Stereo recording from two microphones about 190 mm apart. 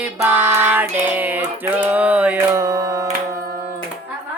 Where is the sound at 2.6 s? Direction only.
20° right (ahead or behind).